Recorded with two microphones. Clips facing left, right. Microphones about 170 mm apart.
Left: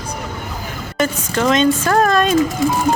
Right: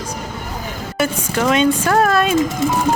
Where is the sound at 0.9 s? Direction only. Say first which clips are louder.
Left 1 dB; 10° right (ahead or behind).